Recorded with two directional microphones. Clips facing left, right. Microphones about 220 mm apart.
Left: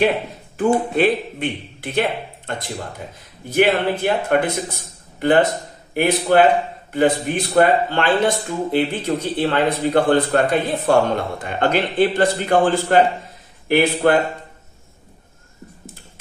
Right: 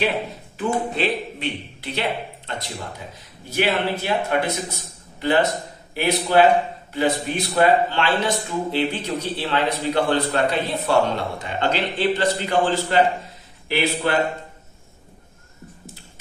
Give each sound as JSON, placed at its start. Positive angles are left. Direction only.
{"t": 0.9, "sound": "a man's voice", "side_deg": 50}